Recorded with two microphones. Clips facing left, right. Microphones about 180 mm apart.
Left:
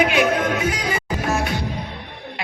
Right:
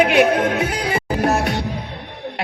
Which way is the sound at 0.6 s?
60° right (ahead or behind).